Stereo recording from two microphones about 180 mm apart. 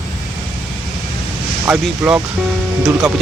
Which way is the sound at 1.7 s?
5° right (ahead or behind).